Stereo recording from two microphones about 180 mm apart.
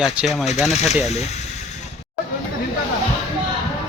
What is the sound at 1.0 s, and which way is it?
Speech, 40° left (ahead or behind).